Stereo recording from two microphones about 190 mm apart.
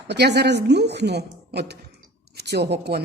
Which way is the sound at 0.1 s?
60° right (ahead or behind).